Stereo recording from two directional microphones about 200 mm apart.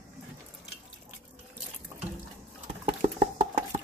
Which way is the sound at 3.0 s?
35° right (ahead or behind).